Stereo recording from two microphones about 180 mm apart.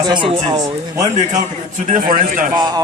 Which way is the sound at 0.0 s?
25° right (ahead or behind).